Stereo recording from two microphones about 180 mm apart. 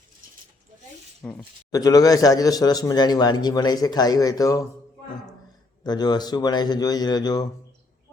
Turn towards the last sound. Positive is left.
turn(degrees=20)  # may be behind; listen again after turning